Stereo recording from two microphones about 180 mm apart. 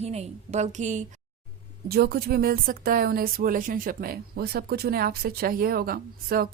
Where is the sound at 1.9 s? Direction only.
60° right (ahead or behind).